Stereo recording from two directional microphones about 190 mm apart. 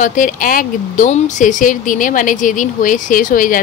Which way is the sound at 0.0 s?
45° left (ahead or behind).